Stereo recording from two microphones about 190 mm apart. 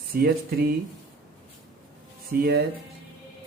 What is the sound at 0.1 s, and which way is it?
Speech, 55° right (ahead or behind).